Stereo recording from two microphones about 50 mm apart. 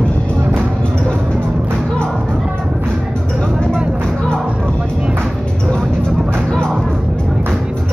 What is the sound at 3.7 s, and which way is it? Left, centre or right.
Music, right.